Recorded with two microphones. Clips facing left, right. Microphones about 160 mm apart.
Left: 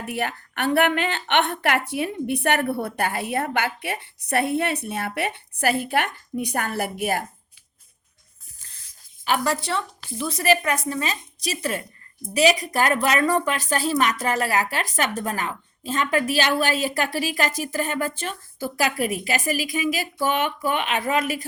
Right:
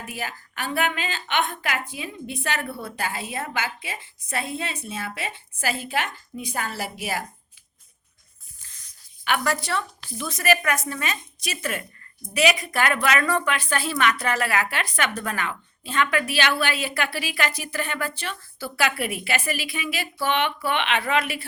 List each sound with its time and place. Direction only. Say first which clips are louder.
0.0 s a woman's voice: left 6 dB; 65° left (ahead or behind)
9.2 s a woman's voice: left 2 dB; 30° left (ahead or behind)